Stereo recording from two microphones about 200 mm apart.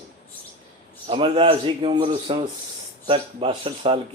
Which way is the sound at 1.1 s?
25° right (ahead or behind).